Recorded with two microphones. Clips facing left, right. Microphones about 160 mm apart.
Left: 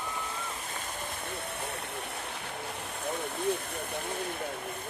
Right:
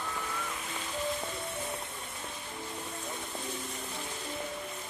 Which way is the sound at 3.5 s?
60° left (ahead or behind).